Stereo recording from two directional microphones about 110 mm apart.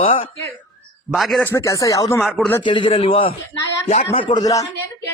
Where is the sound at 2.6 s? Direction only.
50° left (ahead or behind).